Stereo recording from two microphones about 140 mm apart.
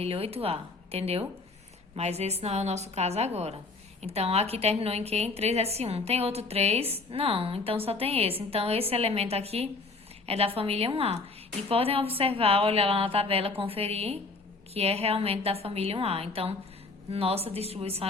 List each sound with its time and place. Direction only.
0.0 s a woman's voice: 45° right (ahead or behind)